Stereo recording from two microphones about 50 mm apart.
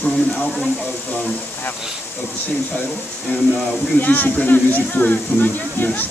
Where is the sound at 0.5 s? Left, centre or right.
Centre.